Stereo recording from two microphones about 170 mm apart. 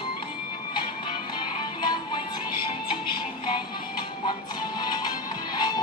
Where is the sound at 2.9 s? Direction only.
25° left (ahead or behind).